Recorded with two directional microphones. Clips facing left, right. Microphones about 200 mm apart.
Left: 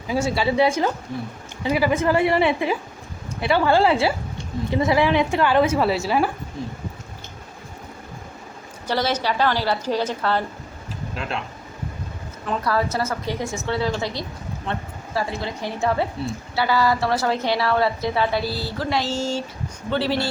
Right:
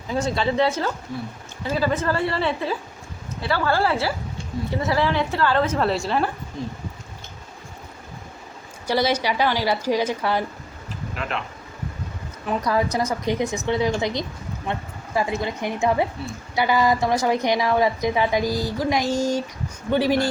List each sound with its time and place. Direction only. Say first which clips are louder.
0.1 s a woman's voice: left 1 dB; 10° left (ahead or behind)
8.9 s a woman's voice: right 1 dB; 10° right (ahead or behind)
12.5 s a woman's voice: right 1 dB; 15° right (ahead or behind)
14.7 s a sound: right 1 dB; 15° right (ahead or behind)
15.4 s a woman's voice: right 2 dB; 15° right (ahead or behind)